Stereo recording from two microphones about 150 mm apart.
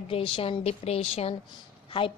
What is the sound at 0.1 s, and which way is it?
A woman's voice, 40° left (ahead or behind).